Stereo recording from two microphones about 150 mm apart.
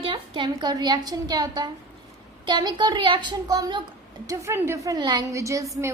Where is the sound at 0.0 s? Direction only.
35° right (ahead or behind).